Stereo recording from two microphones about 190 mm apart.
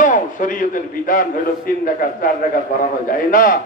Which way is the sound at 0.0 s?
45° left (ahead or behind).